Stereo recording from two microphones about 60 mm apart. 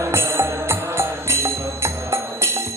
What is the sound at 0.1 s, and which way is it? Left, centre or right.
Music, right.